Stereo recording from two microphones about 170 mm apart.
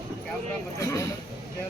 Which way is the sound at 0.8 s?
20° left (ahead or behind).